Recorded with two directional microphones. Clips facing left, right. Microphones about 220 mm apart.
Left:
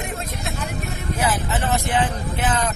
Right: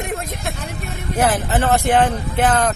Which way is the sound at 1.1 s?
55° right (ahead or behind).